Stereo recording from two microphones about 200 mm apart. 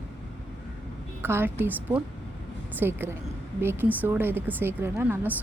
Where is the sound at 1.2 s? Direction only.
10° right (ahead or behind).